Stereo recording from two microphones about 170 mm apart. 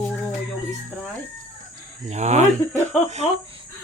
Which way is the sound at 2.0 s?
40° right (ahead or behind).